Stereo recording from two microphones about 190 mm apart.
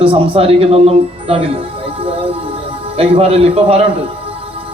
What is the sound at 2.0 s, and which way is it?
Music, 30° right (ahead or behind).